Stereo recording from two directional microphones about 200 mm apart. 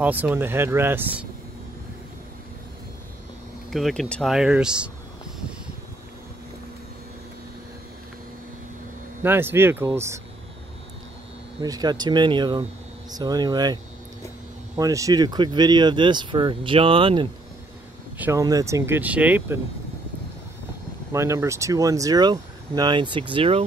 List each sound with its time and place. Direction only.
0.0 s speech: 10° right (ahead or behind)
3.7 s speech: centre (ahead or behind)
9.2 s speech: 10° right (ahead or behind)
11.6 s speech: 20° right (ahead or behind)
14.8 s speech: 15° right (ahead or behind)
18.1 s speech: 10° right (ahead or behind)
21.1 s speech: 15° right (ahead or behind)